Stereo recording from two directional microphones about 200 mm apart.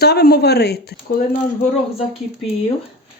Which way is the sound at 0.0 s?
55° left (ahead or behind).